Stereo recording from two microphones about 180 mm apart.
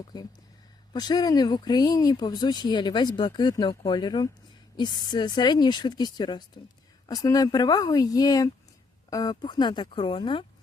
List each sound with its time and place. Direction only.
0.0 s speech: 20° left (ahead or behind)